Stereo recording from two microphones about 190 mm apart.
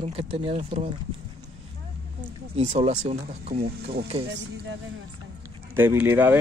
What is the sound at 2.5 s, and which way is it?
Speech, 35° right (ahead or behind).